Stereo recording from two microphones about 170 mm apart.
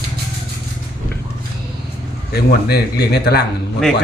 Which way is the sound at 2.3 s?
65° left (ahead or behind).